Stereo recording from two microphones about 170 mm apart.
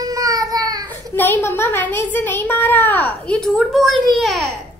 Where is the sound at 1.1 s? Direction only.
10° left (ahead or behind).